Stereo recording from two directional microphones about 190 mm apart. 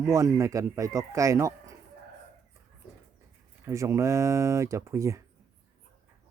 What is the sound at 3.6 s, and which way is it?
Speech, 15° right (ahead or behind).